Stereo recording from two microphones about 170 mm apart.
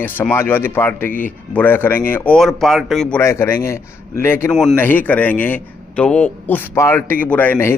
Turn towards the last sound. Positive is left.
turn(degrees=15)  # may be behind; listen again after turning